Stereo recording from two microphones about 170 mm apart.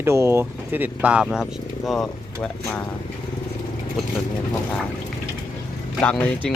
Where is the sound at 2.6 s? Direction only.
20° left (ahead or behind).